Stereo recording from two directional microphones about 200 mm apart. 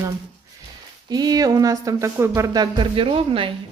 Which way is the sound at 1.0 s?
20° right (ahead or behind).